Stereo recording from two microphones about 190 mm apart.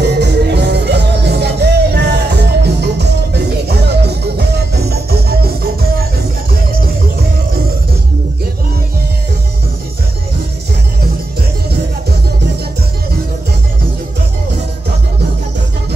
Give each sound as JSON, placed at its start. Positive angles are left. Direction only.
{"t": 0.0, "sound": "music", "side_deg": -60}